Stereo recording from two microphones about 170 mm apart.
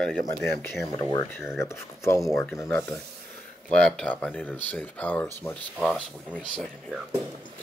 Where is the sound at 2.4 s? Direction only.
Centre (ahead or behind).